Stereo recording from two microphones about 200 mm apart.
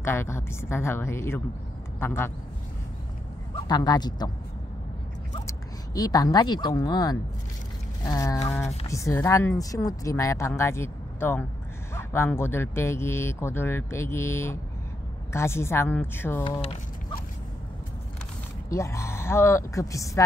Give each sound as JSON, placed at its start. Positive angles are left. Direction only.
{"t": 0.0, "sound": "speech", "side_deg": 10}
{"t": 3.5, "sound": "speech", "side_deg": 20}
{"t": 5.5, "sound": "a woman's voice", "side_deg": 20}
{"t": 16.4, "sound": "speech", "side_deg": 25}
{"t": 18.7, "sound": "speech", "side_deg": 15}